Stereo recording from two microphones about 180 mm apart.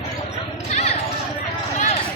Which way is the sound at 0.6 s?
35° left (ahead or behind).